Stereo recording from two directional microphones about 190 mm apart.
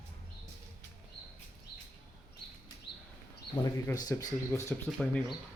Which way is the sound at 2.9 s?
60° left (ahead or behind).